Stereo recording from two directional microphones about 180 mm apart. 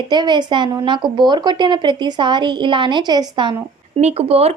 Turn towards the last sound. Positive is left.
turn(degrees=-35)  # may be behind; listen again after turning